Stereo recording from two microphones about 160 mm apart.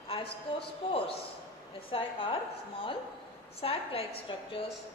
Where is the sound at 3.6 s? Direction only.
35° left (ahead or behind).